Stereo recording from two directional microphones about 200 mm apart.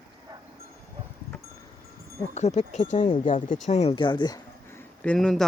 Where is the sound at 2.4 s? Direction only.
35° left (ahead or behind).